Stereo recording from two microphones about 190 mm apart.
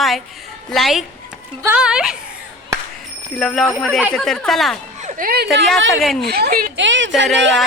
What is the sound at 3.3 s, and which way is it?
A woman's voice, centre (ahead or behind).